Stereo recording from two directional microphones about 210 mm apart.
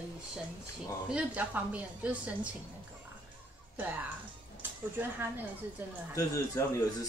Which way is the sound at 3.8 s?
10° right (ahead or behind).